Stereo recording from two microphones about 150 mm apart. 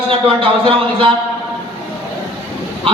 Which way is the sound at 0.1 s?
35° right (ahead or behind).